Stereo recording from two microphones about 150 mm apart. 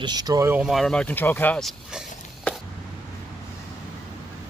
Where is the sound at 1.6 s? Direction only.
5° left (ahead or behind).